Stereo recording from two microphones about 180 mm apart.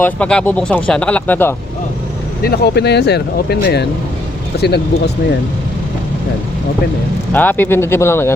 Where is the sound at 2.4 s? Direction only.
65° left (ahead or behind).